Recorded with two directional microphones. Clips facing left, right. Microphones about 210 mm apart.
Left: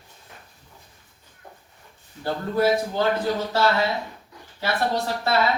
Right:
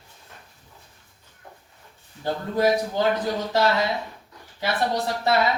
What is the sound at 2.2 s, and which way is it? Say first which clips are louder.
Speech: even; 15° right (ahead or behind).